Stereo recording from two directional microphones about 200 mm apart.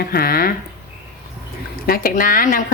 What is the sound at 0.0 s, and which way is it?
Speech, 50° left (ahead or behind).